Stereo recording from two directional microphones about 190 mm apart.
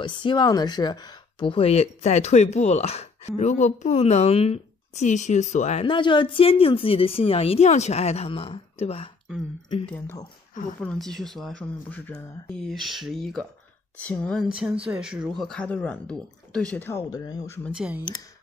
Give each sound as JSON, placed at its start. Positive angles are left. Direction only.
{"t": 0.0, "sound": "speech", "side_deg": 25}
{"t": 9.8, "sound": "speech", "side_deg": 10}
{"t": 17.7, "sound": "speech", "side_deg": -5}